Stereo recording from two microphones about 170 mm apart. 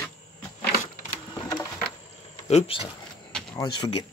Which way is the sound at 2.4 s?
35° left (ahead or behind).